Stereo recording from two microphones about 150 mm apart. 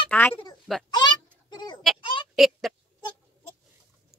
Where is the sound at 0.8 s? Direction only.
30° left (ahead or behind).